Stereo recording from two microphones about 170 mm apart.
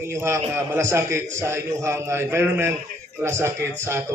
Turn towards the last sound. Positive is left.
turn(degrees=-15)  # may be behind; listen again after turning